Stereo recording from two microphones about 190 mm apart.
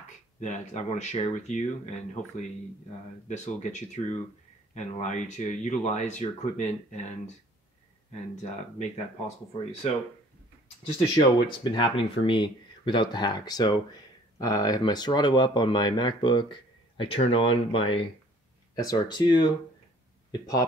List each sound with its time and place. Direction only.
0.4 s speech: 35° left (ahead or behind)
3.3 s speech: 40° left (ahead or behind)
8.4 s speech: 40° left (ahead or behind)
11.1 s speech: 25° left (ahead or behind)